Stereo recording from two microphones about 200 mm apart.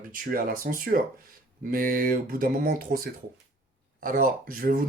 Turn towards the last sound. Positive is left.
turn(degrees=-45)  # may be behind; listen again after turning